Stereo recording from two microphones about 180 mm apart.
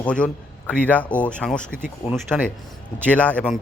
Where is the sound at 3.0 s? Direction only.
5° left (ahead or behind).